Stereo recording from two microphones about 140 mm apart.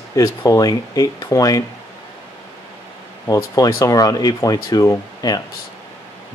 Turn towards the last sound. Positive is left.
turn(degrees=25)  # may be behind; listen again after turning